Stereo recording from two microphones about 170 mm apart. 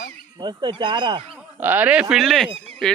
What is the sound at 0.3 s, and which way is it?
Speech, 25° right (ahead or behind).